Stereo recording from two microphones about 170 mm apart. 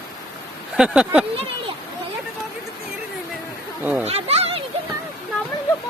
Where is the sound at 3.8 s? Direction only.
10° right (ahead or behind).